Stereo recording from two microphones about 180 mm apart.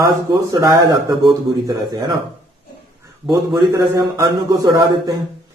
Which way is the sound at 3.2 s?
20° right (ahead or behind).